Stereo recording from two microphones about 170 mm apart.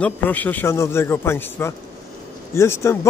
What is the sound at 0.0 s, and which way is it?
A man's voice, 10° left (ahead or behind).